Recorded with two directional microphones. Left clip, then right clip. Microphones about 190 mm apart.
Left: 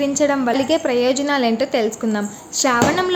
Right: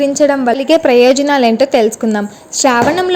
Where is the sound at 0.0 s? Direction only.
25° right (ahead or behind).